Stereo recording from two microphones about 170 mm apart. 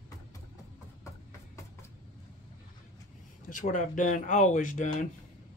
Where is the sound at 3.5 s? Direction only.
50° left (ahead or behind).